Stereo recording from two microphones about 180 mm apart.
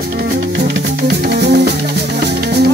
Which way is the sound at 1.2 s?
65° right (ahead or behind).